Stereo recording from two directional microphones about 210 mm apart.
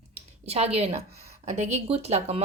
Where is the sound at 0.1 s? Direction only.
30° right (ahead or behind).